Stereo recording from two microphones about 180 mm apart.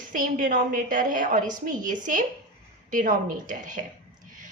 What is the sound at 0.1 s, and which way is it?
A woman's voice, 50° right (ahead or behind).